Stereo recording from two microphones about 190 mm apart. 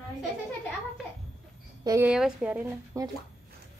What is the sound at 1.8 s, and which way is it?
Speech, 20° right (ahead or behind).